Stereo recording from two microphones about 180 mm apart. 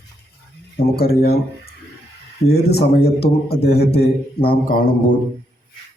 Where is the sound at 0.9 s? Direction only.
60° left (ahead or behind).